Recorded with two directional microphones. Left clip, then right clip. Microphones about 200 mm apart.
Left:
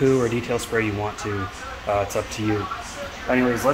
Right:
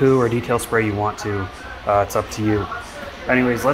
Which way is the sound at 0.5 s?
10° right (ahead or behind).